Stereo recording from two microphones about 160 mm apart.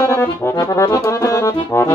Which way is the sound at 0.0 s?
15° left (ahead or behind).